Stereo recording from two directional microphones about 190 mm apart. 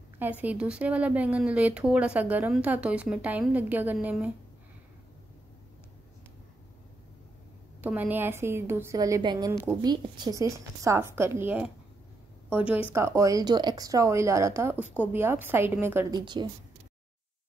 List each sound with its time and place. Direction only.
0.2 s speech: 10° right (ahead or behind)
7.8 s speech: 10° right (ahead or behind)
16.2 s speech: 25° right (ahead or behind)